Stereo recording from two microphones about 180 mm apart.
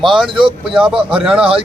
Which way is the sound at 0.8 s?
5° right (ahead or behind).